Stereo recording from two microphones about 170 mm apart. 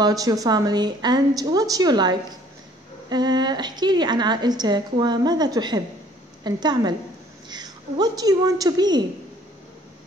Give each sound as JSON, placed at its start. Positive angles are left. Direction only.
{"t": 0.0, "sound": "a woman's voice", "side_deg": -20}